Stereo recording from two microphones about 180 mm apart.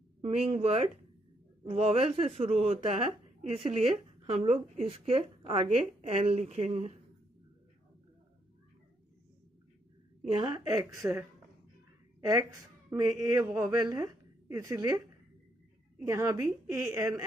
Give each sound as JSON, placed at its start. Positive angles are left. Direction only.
{"t": 0.2, "sound": "speech", "side_deg": -35}
{"t": 10.3, "sound": "a woman's voice", "side_deg": -25}
{"t": 16.0, "sound": "a woman's voice", "side_deg": -15}